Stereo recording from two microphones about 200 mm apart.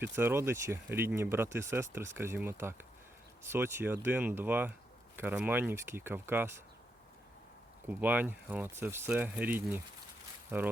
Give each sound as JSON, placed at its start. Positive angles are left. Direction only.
{"t": 0.0, "sound": "speech", "side_deg": -10}
{"t": 7.9, "sound": "speech", "side_deg": -10}